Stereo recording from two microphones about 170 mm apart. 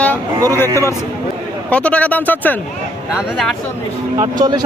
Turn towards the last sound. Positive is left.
turn(degrees=-25)  # may be behind; listen again after turning